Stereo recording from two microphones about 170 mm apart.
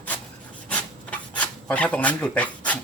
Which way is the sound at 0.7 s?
5° left (ahead or behind).